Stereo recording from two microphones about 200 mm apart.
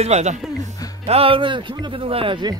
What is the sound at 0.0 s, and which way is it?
Speech, 35° right (ahead or behind).